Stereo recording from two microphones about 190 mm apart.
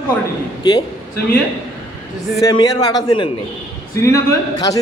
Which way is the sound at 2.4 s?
20° left (ahead or behind).